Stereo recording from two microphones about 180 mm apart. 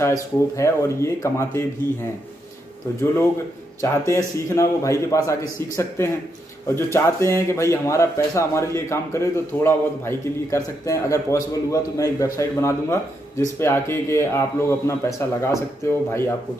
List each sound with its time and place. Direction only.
0.0 s a man's voice: 15° left (ahead or behind)
3.8 s a man's voice: 15° left (ahead or behind)